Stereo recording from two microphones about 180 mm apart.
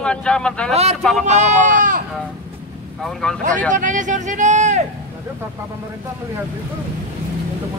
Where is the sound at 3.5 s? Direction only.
45° right (ahead or behind).